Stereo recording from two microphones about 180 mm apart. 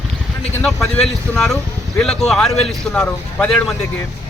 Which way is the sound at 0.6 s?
Centre (ahead or behind).